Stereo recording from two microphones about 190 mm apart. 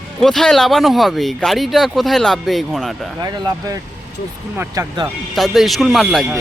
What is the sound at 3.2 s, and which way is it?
Speech, 20° right (ahead or behind).